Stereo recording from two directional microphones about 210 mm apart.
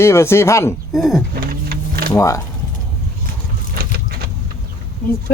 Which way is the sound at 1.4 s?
45° right (ahead or behind).